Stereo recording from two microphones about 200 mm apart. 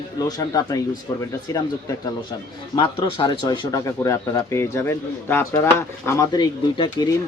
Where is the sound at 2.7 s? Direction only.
20° left (ahead or behind).